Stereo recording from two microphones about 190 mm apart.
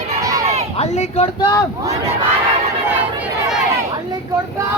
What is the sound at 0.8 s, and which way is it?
Speech, 35° left (ahead or behind).